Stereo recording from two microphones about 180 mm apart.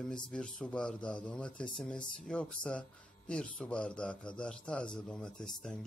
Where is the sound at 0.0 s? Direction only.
5° left (ahead or behind).